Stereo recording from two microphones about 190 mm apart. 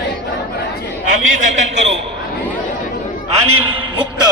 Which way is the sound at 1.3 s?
40° right (ahead or behind).